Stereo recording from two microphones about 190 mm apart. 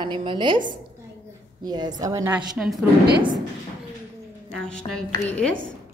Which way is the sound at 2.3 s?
Centre (ahead or behind).